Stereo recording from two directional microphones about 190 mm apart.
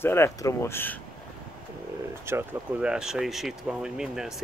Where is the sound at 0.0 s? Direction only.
15° left (ahead or behind).